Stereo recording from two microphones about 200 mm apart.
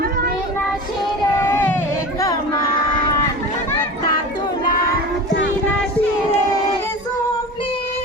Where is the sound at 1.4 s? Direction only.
10° left (ahead or behind).